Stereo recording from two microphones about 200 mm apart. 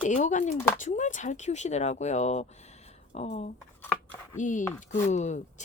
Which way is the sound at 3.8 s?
10° left (ahead or behind).